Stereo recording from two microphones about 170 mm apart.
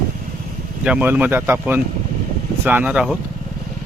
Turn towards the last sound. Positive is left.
turn(degrees=-5)  # may be behind; listen again after turning